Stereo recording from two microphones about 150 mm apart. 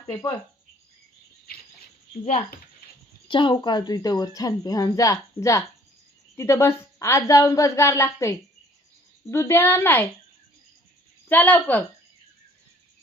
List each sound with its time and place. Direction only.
0.1 s a woman's voice: 30° left (ahead or behind)
3.2 s a woman's voice: 30° left (ahead or behind); by 10.1 s 15° left (ahead or behind)
11.3 s a woman's voice: 10° left (ahead or behind)